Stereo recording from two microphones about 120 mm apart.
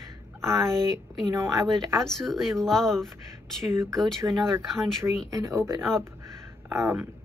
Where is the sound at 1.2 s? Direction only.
25° right (ahead or behind).